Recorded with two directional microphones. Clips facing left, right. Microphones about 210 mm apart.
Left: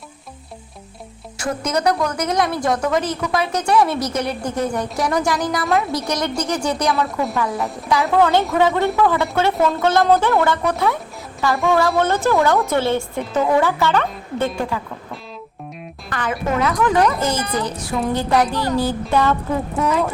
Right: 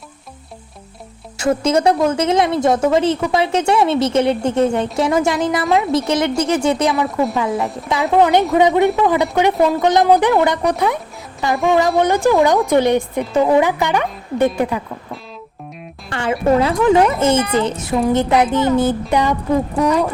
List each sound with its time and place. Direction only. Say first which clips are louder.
1.4 s a woman's voice: right 6 dB; 25° right (ahead or behind)
16.0 s a woman's voice: right 6 dB; 25° right (ahead or behind)